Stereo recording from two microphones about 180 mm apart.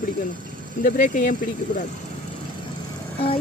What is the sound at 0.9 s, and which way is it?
Speech, 50° left (ahead or behind).